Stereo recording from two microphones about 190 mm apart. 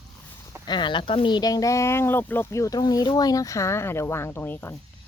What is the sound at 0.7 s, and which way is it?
Speech, 25° left (ahead or behind).